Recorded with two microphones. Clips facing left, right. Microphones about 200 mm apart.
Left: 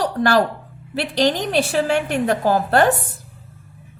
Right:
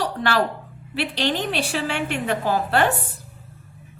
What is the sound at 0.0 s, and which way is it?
A woman's voice, 45° left (ahead or behind).